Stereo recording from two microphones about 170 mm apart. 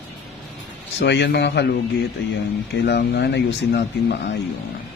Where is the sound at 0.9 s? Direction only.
85° left.